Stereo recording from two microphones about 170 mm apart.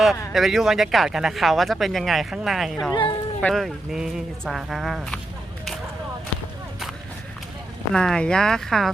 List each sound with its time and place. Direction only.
0.3 s speech: centre (ahead or behind)
2.9 s speech: 25° left (ahead or behind)
3.4 s speech: centre (ahead or behind)
7.9 s speech: 5° left (ahead or behind)